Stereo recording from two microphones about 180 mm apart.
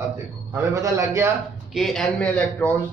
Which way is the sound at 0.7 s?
15° right (ahead or behind).